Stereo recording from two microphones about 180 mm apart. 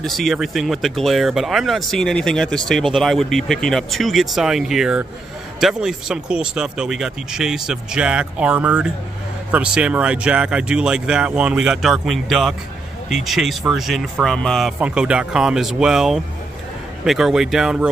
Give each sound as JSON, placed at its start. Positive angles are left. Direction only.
{"t": 0.0, "sound": "speech", "side_deg": 0}